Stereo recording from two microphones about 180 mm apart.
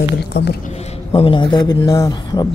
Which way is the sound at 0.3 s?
65° left (ahead or behind).